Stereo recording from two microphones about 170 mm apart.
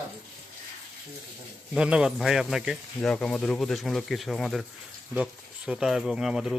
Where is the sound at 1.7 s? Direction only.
5° right (ahead or behind).